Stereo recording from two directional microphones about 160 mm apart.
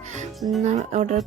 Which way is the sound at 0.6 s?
45° right (ahead or behind).